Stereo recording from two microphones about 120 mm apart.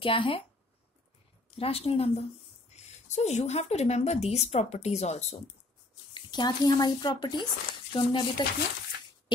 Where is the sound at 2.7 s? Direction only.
70° left (ahead or behind).